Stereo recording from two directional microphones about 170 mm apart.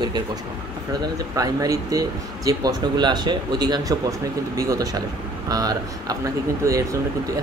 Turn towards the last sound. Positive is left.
turn(degrees=-15)  # may be behind; listen again after turning